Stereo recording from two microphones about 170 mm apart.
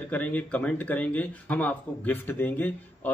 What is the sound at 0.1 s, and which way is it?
Speech, 10° left (ahead or behind).